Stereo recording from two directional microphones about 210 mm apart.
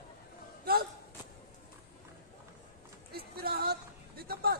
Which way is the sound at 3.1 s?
45° right (ahead or behind).